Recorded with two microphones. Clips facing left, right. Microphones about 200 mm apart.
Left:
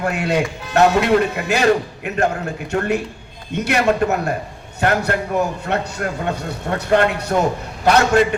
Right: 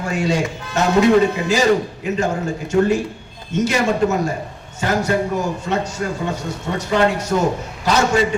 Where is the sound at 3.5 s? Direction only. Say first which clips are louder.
Even; 60° left (ahead or behind).